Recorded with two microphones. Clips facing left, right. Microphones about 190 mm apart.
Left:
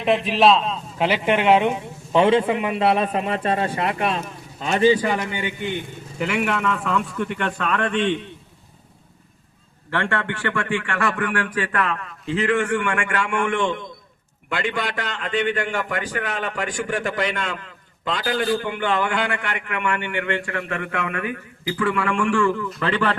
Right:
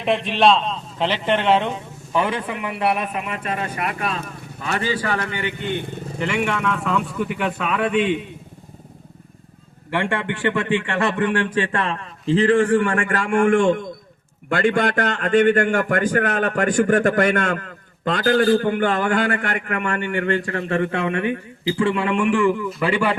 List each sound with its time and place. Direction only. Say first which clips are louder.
0.0 s a man's voice: even; centre (ahead or behind)
2.1 s a man's voice: left 6 dB; 25° left (ahead or behind)
5.7 s speech: right 3 dB; 5° left (ahead or behind)
9.9 s a man's voice: right 2 dB; 15° right (ahead or behind)